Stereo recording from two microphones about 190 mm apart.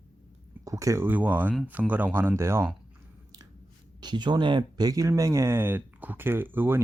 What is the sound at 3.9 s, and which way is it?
Speech, 25° right (ahead or behind).